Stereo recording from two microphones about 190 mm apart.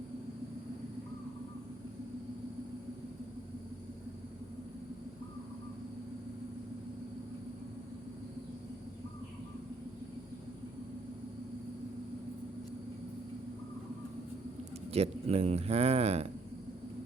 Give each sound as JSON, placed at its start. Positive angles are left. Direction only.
{"t": 14.9, "sound": "speech", "side_deg": -30}